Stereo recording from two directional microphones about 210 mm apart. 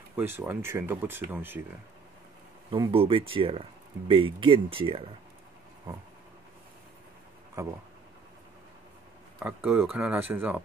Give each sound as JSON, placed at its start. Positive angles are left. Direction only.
{"t": 0.1, "sound": "speech", "side_deg": -10}
{"t": 2.7, "sound": "speech", "side_deg": -25}
{"t": 9.4, "sound": "speech", "side_deg": -5}